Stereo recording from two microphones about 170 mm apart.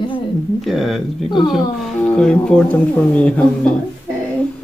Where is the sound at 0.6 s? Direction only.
Centre (ahead or behind).